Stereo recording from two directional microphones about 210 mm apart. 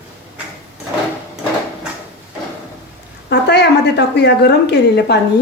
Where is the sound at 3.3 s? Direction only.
55° left (ahead or behind).